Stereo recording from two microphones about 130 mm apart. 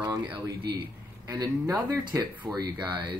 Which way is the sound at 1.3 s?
25° right (ahead or behind).